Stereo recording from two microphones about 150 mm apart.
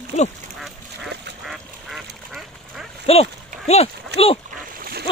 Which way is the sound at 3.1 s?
40° left (ahead or behind).